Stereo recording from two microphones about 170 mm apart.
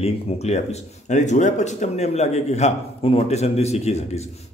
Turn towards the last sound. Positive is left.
turn(degrees=40)  # may be behind; listen again after turning